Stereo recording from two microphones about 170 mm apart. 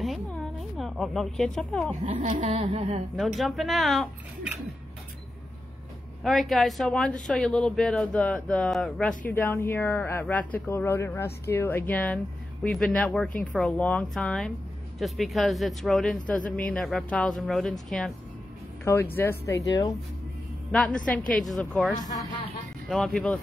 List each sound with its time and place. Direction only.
0.0 s a sound: centre (ahead or behind)
2.0 s speech: 45° right (ahead or behind)
3.2 s speech: centre (ahead or behind)
6.2 s speech: centre (ahead or behind)
9.2 s speech: 10° left (ahead or behind)
18.9 s speech: 15° left (ahead or behind)
20.7 s speech: 5° left (ahead or behind)